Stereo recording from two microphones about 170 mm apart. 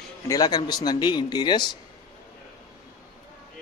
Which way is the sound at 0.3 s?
25° left (ahead or behind).